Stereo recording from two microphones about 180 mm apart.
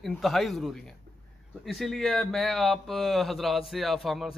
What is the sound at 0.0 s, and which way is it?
A man's voice, centre (ahead or behind).